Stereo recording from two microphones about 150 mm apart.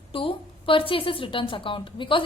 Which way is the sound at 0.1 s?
35° left (ahead or behind).